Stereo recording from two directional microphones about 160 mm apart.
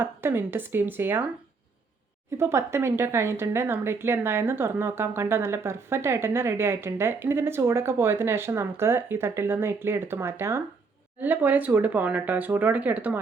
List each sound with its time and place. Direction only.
0.0 s a woman's voice: 15° right (ahead or behind)
2.4 s a woman's voice: 15° right (ahead or behind)